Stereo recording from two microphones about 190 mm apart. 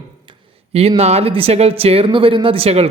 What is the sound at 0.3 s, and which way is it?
Speech, 30° right (ahead or behind).